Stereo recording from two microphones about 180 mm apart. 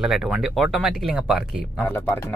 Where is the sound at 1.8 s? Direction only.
10° left (ahead or behind).